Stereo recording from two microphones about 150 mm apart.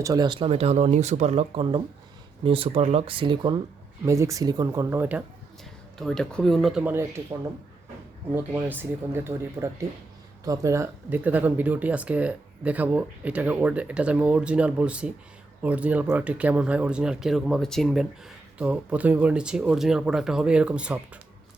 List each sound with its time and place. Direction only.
0.0 s speech: 25° right (ahead or behind)
4.0 s speech: 20° right (ahead or behind)
6.0 s speech: 5° left (ahead or behind)
6.9 s speech: 20° right (ahead or behind)